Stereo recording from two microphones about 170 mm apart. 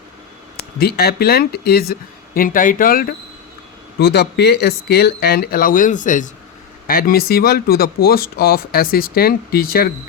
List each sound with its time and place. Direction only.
0.8 s speech: 65° left (ahead or behind)
4.0 s speech: 75° left (ahead or behind); by 6.3 s 50° left (ahead or behind)
6.8 s speech: 60° left (ahead or behind)